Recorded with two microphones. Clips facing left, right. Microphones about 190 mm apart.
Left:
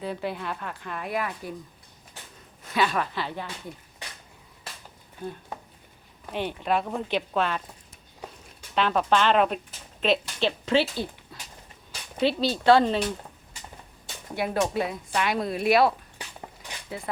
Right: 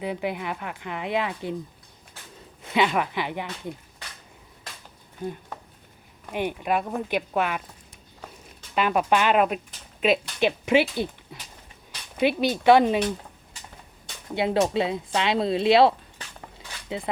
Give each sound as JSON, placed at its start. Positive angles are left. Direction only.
{"t": 0.0, "sound": "speech", "side_deg": -15}
{"t": 2.6, "sound": "speech", "side_deg": -20}
{"t": 5.2, "sound": "speech", "side_deg": -15}
{"t": 8.7, "sound": "speech", "side_deg": -10}
{"t": 14.3, "sound": "speech", "side_deg": -25}